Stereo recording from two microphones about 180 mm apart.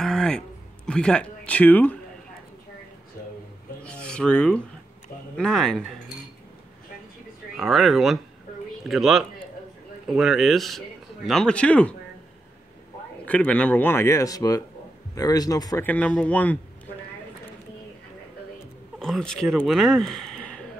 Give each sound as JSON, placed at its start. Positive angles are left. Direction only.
{"t": 0.0, "sound": "a sound", "side_deg": 5}
{"t": 0.8, "sound": "speech", "side_deg": 5}
{"t": 3.8, "sound": "a sound", "side_deg": 5}
{"t": 5.4, "sound": "speech", "side_deg": 5}
{"t": 7.5, "sound": "speech", "side_deg": 0}
{"t": 13.2, "sound": "a man's voice", "side_deg": 5}
{"t": 15.9, "sound": "speech", "side_deg": 5}
{"t": 18.9, "sound": "speech", "side_deg": 5}